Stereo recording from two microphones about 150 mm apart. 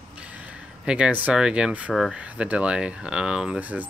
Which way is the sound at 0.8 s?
10° right (ahead or behind).